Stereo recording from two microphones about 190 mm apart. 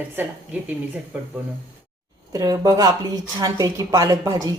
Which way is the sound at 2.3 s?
20° right (ahead or behind).